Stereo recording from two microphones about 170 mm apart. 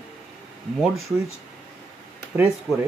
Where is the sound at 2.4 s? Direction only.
10° right (ahead or behind).